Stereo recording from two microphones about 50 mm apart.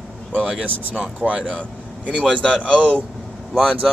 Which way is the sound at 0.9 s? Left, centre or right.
Right.